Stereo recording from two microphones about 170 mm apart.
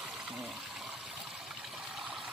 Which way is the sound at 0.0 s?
Centre (ahead or behind).